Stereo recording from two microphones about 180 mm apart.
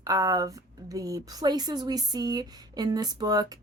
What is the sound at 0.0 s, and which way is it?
A woman's voice, 20° right (ahead or behind).